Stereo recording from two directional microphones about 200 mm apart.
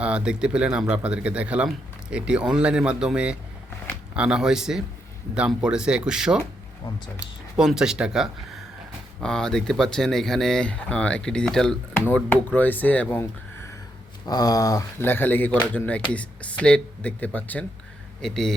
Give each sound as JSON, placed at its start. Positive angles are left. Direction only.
{"t": 0.0, "sound": "speech", "side_deg": -5}
{"t": 14.3, "sound": "speech", "side_deg": 20}